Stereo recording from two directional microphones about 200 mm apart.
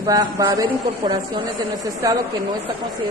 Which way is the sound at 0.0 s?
20° right (ahead or behind).